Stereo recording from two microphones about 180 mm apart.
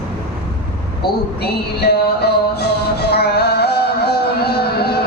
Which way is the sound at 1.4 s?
60° left (ahead or behind).